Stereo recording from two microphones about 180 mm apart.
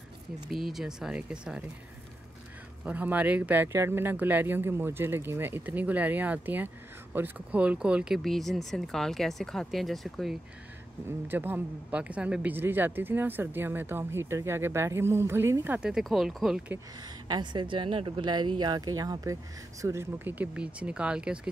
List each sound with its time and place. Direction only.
0.5 s speech: centre (ahead or behind)
2.8 s speech: 10° right (ahead or behind)
11.2 s speech: 10° right (ahead or behind)
17.3 s speech: 25° right (ahead or behind); by 21.4 s 5° right (ahead or behind)